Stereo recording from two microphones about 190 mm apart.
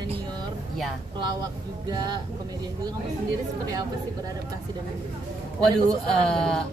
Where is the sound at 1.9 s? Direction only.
20° right (ahead or behind).